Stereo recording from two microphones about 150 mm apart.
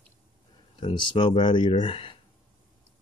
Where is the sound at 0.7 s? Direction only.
35° left (ahead or behind).